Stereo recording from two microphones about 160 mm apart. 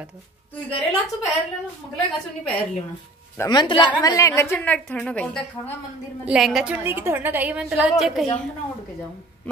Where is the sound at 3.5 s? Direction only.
30° left (ahead or behind); by 6.7 s centre (ahead or behind).